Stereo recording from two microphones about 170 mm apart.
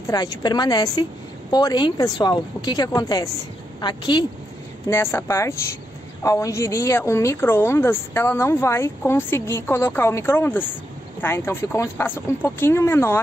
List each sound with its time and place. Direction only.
0.0 s speech: 20° left (ahead or behind)
4.8 s a woman's voice: 15° left (ahead or behind)